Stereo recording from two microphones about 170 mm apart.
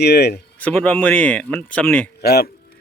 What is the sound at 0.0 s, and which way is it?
Speech, 75° left (ahead or behind).